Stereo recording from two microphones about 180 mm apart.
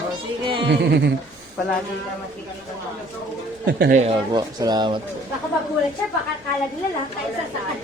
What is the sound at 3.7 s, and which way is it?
Speech, 65° right (ahead or behind).